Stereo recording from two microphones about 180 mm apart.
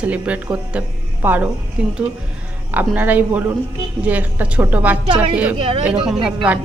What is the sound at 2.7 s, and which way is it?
Speech, 10° right (ahead or behind).